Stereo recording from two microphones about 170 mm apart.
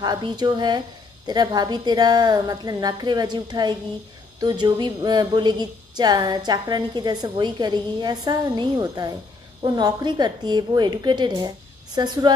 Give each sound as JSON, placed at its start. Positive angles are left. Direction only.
{"t": 0.0, "sound": "a woman's voice", "side_deg": -25}